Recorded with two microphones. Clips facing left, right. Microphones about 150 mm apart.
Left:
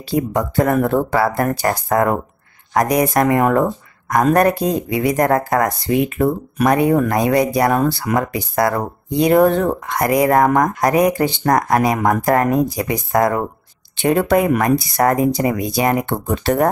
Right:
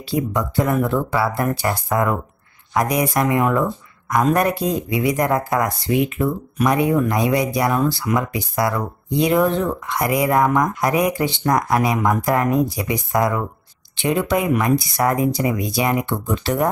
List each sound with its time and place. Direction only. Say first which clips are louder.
0.1 s speech: left 3 dB; 50° left (ahead or behind)